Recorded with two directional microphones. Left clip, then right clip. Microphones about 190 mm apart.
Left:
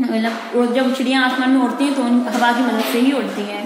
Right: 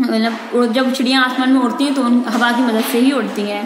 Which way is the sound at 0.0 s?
20° right (ahead or behind).